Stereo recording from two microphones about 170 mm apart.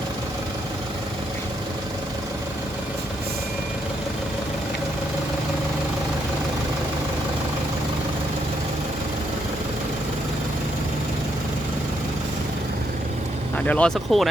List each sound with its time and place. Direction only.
13.7 s speech: 5° left (ahead or behind)